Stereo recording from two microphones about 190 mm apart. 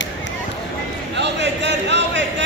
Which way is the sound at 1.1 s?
65° right (ahead or behind).